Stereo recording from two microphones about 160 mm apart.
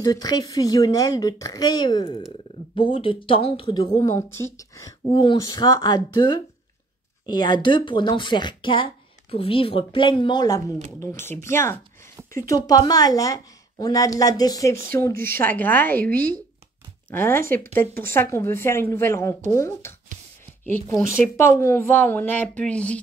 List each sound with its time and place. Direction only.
0.0 s speech: 25° left (ahead or behind)
4.3 s speech: 15° left (ahead or behind)